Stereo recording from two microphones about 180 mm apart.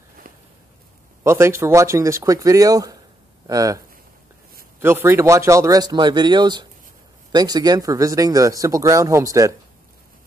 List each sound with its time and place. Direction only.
1.2 s speech: 15° right (ahead or behind)